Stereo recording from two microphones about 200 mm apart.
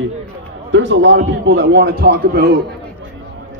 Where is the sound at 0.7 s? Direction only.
65° right (ahead or behind); by 2.6 s 50° right (ahead or behind).